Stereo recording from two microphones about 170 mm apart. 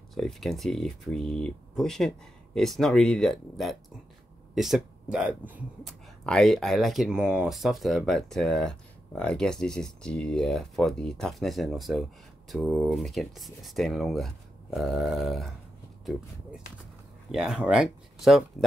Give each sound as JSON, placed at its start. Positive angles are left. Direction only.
{"t": 0.1, "sound": "speech", "side_deg": 0}
{"t": 6.2, "sound": "speech", "side_deg": 5}
{"t": 17.3, "sound": "speech", "side_deg": -5}